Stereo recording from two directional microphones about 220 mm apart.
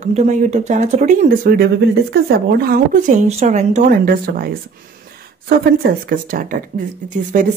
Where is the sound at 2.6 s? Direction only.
35° right (ahead or behind).